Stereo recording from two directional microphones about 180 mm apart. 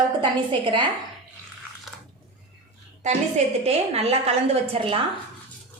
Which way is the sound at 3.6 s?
35° right (ahead or behind).